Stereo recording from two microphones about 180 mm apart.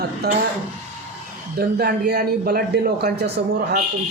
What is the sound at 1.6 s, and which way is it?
A man's voice, 60° right (ahead or behind).